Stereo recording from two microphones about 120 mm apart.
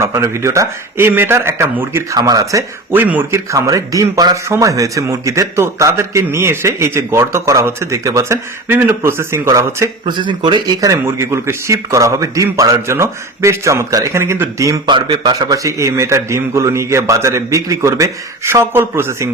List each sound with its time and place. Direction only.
0.0 s a man's voice: 25° right (ahead or behind)
2.9 s speech: 15° right (ahead or behind)
3.5 s a man's voice: 25° right (ahead or behind)
10.1 s a man's voice: 40° right (ahead or behind); by 14.8 s 25° right (ahead or behind)
14.8 s a man's voice: 40° right (ahead or behind); by 19.3 s 20° right (ahead or behind)